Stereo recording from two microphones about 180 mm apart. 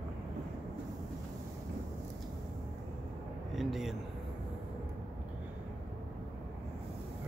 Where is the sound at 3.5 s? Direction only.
Centre (ahead or behind).